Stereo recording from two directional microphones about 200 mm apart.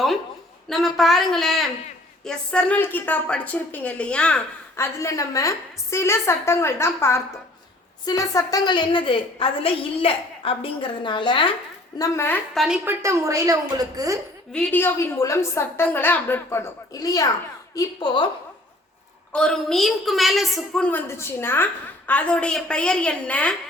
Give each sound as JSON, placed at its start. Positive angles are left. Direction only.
{"t": 0.7, "sound": "a woman's voice", "side_deg": 0}
{"t": 4.8, "sound": "a woman's voice", "side_deg": 15}
{"t": 12.5, "sound": "a woman's voice", "side_deg": -5}
{"t": 14.5, "sound": "a woman's voice", "side_deg": 10}
{"t": 19.3, "sound": "a woman's voice", "side_deg": 5}